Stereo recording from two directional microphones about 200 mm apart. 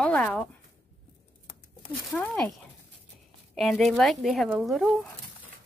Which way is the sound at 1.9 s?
5° left (ahead or behind).